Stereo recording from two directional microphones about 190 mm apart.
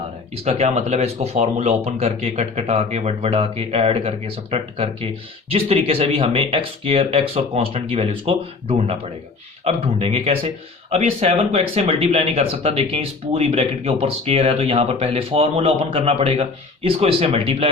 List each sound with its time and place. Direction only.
0.4 s speech: 30° right (ahead or behind)